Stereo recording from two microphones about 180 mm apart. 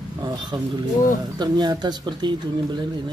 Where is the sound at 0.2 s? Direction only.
25° right (ahead or behind).